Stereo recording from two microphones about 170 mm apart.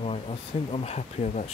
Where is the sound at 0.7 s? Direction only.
35° left (ahead or behind).